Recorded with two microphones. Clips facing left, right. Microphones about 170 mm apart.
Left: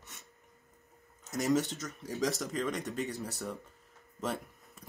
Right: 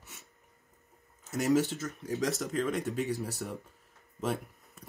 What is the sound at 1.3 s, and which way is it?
Speech, 5° right (ahead or behind).